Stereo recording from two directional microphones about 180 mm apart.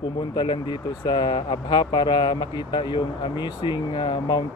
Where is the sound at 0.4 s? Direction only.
25° left (ahead or behind).